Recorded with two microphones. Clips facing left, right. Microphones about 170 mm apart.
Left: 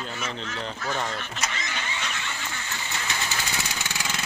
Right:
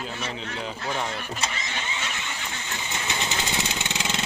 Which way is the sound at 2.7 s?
20° right (ahead or behind).